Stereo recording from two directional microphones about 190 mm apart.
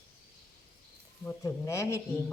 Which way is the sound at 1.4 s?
15° left (ahead or behind).